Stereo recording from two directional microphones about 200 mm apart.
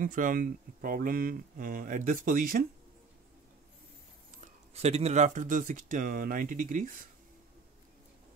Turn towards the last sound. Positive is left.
turn(degrees=-45)  # may be behind; listen again after turning